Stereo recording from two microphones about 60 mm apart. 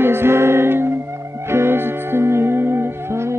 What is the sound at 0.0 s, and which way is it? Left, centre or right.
Music, right.